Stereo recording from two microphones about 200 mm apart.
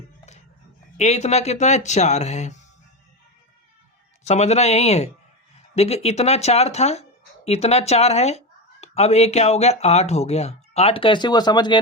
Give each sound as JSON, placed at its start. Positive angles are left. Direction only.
{"t": 0.9, "sound": "speech", "side_deg": 35}
{"t": 4.2, "sound": "speech", "side_deg": 35}